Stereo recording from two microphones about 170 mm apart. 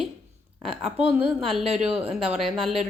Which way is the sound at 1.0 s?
10° right (ahead or behind).